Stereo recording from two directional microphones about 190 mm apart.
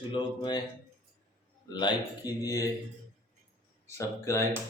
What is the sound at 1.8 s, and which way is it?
Speech, 20° left (ahead or behind).